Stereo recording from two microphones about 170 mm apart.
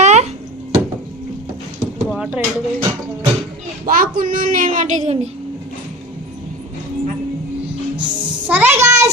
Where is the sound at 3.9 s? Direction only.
55° right (ahead or behind).